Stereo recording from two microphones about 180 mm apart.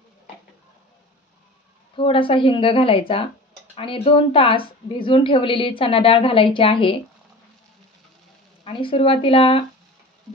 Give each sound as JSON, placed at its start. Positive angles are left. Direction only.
{"t": 2.0, "sound": "a woman's voice", "side_deg": 30}
{"t": 8.6, "sound": "speech", "side_deg": 30}